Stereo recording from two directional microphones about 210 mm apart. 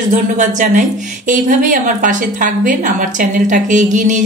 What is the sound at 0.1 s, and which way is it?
A woman's voice, 35° right (ahead or behind).